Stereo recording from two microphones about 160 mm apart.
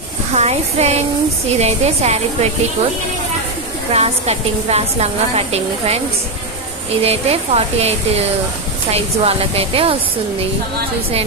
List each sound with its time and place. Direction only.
0.3 s a woman's voice: 40° right (ahead or behind)
3.9 s a woman's voice: 40° right (ahead or behind)
7.0 s a woman's voice: 40° right (ahead or behind)